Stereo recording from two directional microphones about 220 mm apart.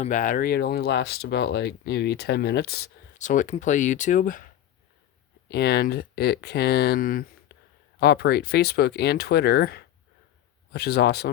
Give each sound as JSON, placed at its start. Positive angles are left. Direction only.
{"t": 0.0, "sound": "speech", "side_deg": 35}
{"t": 5.5, "sound": "speech", "side_deg": 50}